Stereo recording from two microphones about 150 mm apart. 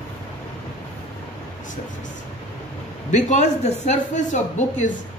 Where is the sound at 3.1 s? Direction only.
50° left (ahead or behind).